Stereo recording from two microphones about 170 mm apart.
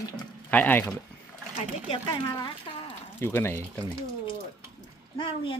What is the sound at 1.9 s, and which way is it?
Speech, 25° left (ahead or behind).